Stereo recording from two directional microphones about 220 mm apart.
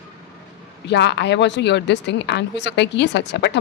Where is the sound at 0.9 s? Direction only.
50° left (ahead or behind).